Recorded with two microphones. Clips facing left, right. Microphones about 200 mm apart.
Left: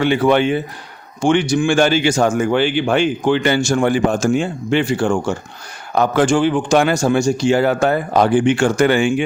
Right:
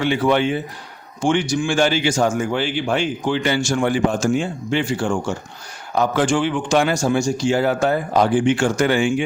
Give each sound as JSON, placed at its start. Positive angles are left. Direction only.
{"t": 0.0, "sound": "speech", "side_deg": 60}
{"t": 6.2, "sound": "a man's voice", "side_deg": 40}
{"t": 6.7, "sound": "speech", "side_deg": 60}